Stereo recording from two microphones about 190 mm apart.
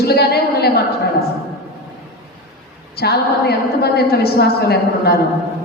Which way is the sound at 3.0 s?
55° left (ahead or behind).